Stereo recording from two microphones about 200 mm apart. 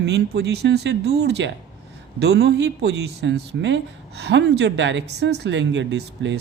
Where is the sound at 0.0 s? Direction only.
60° right (ahead or behind).